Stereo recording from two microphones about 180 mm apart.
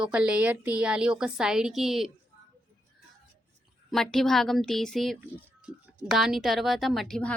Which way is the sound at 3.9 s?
Centre (ahead or behind).